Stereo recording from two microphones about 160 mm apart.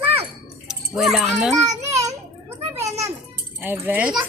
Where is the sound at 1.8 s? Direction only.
20° right (ahead or behind).